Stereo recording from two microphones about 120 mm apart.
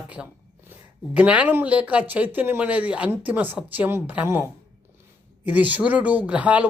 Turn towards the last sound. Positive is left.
turn(degrees=-10)  # may be behind; listen again after turning